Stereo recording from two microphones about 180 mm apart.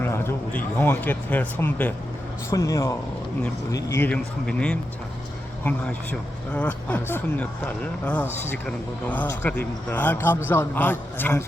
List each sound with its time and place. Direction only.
0.0 s a man's voice: 15° left (ahead or behind)
6.5 s speech: 10° left (ahead or behind)